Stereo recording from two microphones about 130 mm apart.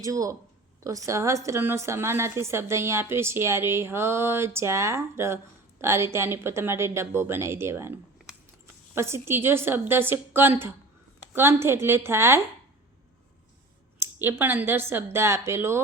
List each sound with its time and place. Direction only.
0.0 s a woman's voice: 25° right (ahead or behind)
9.0 s a woman's voice: 20° right (ahead or behind)
14.0 s a woman's voice: 15° right (ahead or behind)